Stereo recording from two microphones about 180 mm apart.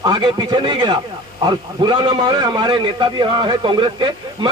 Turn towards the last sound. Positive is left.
turn(degrees=-25)  # may be behind; listen again after turning